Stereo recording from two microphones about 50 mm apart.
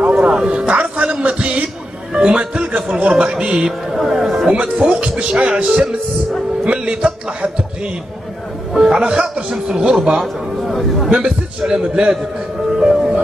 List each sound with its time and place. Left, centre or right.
0.0 s music: right
0.4 s speech: right
3.9 s a man's voice: centre
4.5 s speech: centre
8.7 s speech: centre
10.2 s a man's voice: centre
11.1 s speech: right